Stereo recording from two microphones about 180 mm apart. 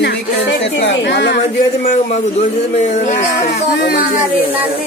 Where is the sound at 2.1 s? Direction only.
40° left (ahead or behind).